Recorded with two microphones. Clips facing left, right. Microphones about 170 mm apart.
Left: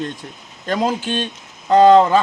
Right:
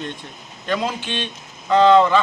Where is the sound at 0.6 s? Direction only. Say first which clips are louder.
Left 4 dB; 40° left (ahead or behind).